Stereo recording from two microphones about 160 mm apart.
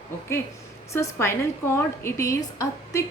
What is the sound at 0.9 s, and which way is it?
A woman's voice, 15° left (ahead or behind).